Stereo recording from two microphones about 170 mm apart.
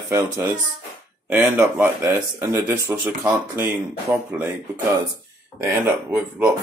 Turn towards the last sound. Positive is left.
turn(degrees=-15)  # may be behind; listen again after turning